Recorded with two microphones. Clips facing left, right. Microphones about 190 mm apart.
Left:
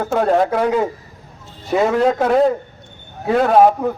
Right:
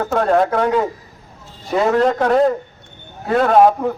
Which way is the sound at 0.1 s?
10° left (ahead or behind).